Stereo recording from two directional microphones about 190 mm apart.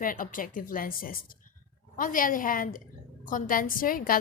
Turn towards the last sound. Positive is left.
turn(degrees=50)  # may be behind; listen again after turning